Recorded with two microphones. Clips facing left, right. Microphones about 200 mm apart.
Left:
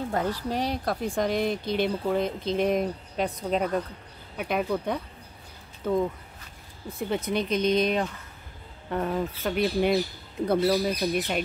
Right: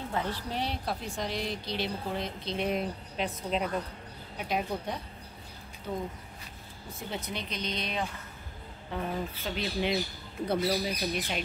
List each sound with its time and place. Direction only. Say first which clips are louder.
0.1 s a woman's voice: left 4 dB; 45° left (ahead or behind)
4.4 s speech: left 5 dB; 60° left (ahead or behind)
7.1 s a woman's voice: left 11 dB; 50° left (ahead or behind)
8.9 s a woman's voice: left 6 dB; 65° left (ahead or behind)